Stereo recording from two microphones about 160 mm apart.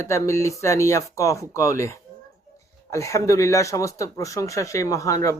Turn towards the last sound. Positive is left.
turn(degrees=20)  # may be behind; listen again after turning